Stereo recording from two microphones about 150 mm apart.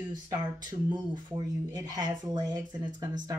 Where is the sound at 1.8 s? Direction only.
25° right (ahead or behind).